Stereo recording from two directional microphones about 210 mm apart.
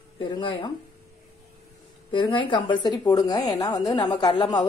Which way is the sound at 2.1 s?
25° left (ahead or behind).